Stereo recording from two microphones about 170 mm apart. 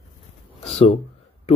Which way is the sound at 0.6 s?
35° left (ahead or behind).